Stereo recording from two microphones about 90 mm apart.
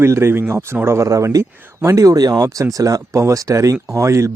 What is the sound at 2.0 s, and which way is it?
Speech, 45° right (ahead or behind).